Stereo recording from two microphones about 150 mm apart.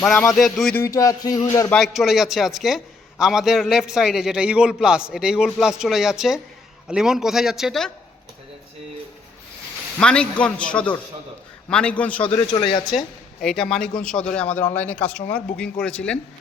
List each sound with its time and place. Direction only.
0.0 s a man's voice: 5° left (ahead or behind)
0.8 s a sound: 25° left (ahead or behind)
1.7 s a man's voice: centre (ahead or behind)
10.0 s speech: 5° left (ahead or behind)
12.5 s a sound: 30° left (ahead or behind)
12.8 s speech: centre (ahead or behind)